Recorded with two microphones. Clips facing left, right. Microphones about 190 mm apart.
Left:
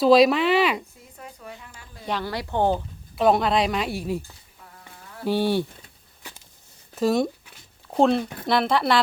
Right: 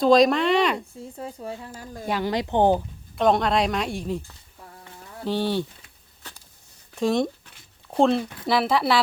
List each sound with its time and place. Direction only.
0.0 s speech: 5° left (ahead or behind)
0.9 s speech: 30° right (ahead or behind)
2.0 s speech: 15° right (ahead or behind)
3.2 s speech: 5° left (ahead or behind)
6.9 s a sound: 5° left (ahead or behind)
7.9 s speech: centre (ahead or behind)